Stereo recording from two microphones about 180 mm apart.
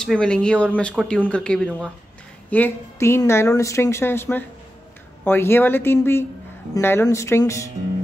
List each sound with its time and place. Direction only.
0.0 s a woman's voice: 5° left (ahead or behind)